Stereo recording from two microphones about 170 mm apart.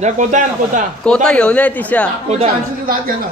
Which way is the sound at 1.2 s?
5° left (ahead or behind).